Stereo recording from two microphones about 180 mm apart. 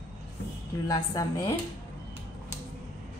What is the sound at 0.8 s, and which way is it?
Speech, 20° left (ahead or behind).